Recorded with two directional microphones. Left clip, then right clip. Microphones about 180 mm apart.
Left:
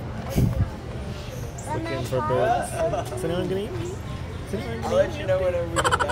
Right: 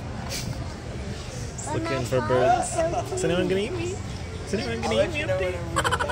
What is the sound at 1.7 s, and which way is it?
Speech, 30° right (ahead or behind).